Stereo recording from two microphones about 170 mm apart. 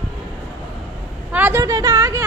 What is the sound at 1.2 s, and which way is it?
Speech, 10° right (ahead or behind).